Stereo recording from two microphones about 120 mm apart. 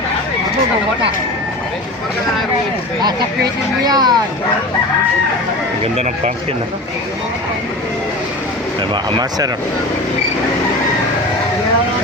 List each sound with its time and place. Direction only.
3.8 s speech: 35° right (ahead or behind)
5.8 s speech: 65° right (ahead or behind)
8.9 s speech: 40° right (ahead or behind)